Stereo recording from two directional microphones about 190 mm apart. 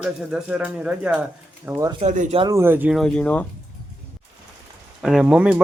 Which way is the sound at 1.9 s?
40° right (ahead or behind).